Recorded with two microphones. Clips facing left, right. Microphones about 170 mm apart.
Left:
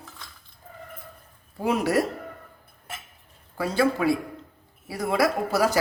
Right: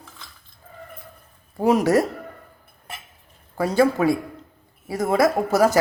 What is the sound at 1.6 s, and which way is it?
Speech, 45° right (ahead or behind).